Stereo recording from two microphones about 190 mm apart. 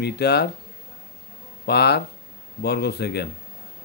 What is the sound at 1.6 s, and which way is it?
A man's voice, 60° left (ahead or behind).